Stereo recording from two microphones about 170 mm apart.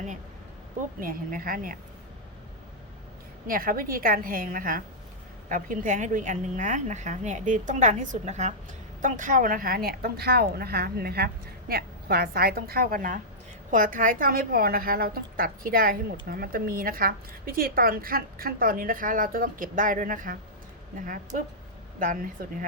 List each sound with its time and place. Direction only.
0.9 s a woman's voice: 55° right (ahead or behind)
3.4 s a woman's voice: 55° right (ahead or behind)
21.9 s a woman's voice: 50° right (ahead or behind)